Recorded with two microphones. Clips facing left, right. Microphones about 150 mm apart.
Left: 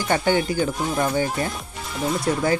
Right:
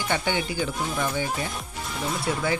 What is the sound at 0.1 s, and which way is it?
Speech, 45° left (ahead or behind).